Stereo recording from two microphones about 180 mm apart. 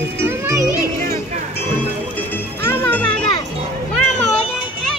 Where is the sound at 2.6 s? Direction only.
10° left (ahead or behind).